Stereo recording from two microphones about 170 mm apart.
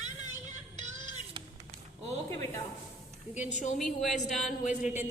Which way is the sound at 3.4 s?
45° left (ahead or behind).